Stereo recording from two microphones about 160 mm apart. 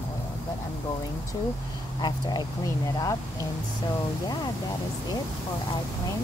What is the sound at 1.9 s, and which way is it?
Speech, 25° left (ahead or behind).